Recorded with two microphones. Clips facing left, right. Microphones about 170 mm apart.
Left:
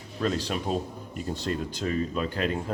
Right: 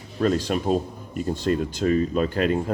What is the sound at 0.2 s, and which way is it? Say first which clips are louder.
Speech: right 6 dB; 45° right (ahead or behind).